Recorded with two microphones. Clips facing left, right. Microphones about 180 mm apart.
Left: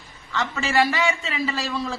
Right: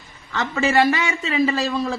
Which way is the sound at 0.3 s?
45° right (ahead or behind).